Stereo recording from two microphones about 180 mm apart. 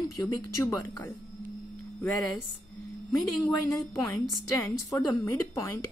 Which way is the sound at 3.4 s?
15° left (ahead or behind).